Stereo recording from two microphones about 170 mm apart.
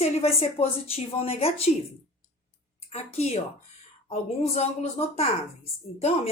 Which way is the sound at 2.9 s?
40° left (ahead or behind).